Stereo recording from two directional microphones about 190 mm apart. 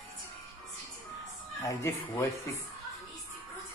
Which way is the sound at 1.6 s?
15° left (ahead or behind).